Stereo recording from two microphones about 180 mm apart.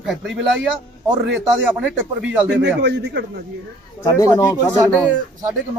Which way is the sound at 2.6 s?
75° right (ahead or behind).